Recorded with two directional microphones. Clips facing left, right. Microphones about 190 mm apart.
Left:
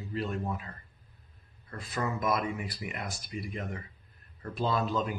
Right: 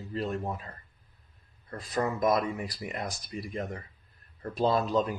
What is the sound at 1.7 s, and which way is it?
Speech, 35° right (ahead or behind).